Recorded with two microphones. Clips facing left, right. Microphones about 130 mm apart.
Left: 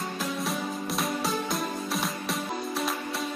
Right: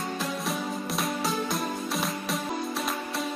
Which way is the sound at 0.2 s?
Centre (ahead or behind).